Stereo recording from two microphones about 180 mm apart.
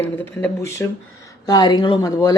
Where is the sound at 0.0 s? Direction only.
10° left (ahead or behind).